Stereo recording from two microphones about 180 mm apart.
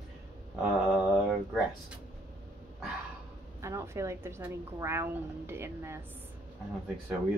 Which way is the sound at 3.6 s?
15° right (ahead or behind).